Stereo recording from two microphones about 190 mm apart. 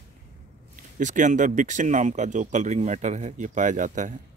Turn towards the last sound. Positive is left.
turn(degrees=-40)  # may be behind; listen again after turning